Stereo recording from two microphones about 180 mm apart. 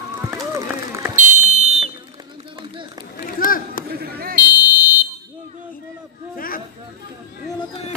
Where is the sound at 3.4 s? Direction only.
50° left (ahead or behind).